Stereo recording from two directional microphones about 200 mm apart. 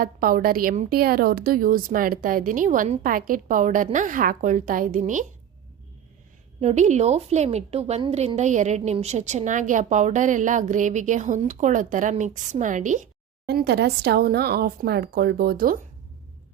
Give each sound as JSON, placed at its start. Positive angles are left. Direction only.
{"t": 0.0, "sound": "a woman's voice", "side_deg": -45}
{"t": 6.6, "sound": "a woman's voice", "side_deg": -35}
{"t": 13.5, "sound": "a woman's voice", "side_deg": -55}